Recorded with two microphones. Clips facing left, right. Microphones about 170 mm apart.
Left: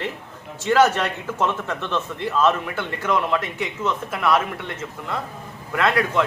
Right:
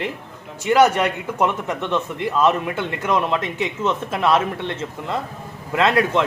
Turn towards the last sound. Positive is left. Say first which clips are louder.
# right 3 dB
turn(degrees=-25)  # may be behind; listen again after turning